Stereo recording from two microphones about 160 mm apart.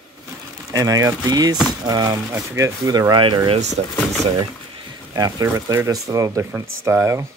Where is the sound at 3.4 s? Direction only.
45° right (ahead or behind).